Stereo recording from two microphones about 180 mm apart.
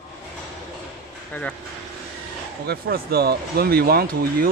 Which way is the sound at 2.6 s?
60° right (ahead or behind).